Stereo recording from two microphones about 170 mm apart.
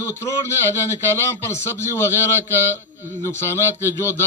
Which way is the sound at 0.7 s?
15° left (ahead or behind).